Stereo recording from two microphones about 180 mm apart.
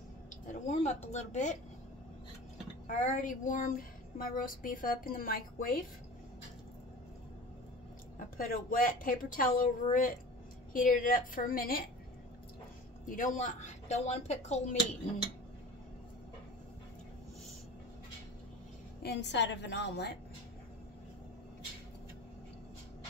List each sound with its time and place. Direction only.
0.5 s speech: 40° left (ahead or behind)
2.9 s speech: 45° left (ahead or behind)
8.4 s speech: 50° left (ahead or behind)
13.0 s speech: 50° left (ahead or behind)
19.0 s a woman's voice: 70° left (ahead or behind)